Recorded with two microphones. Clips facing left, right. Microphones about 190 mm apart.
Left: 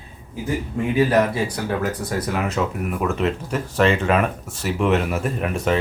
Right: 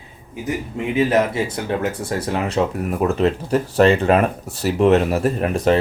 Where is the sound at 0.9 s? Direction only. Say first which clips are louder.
Right 1 dB; 25° right (ahead or behind).